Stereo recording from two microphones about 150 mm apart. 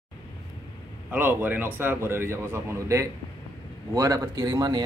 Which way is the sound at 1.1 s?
15° right (ahead or behind).